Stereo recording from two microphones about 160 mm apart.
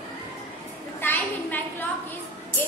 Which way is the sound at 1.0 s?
10° left (ahead or behind).